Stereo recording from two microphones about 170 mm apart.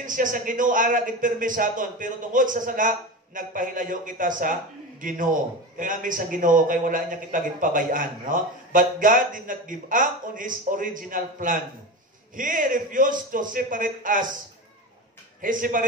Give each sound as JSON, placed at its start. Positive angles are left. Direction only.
{"t": 0.0, "sound": "a man's voice", "side_deg": -50}
{"t": 15.4, "sound": "a man's voice", "side_deg": -50}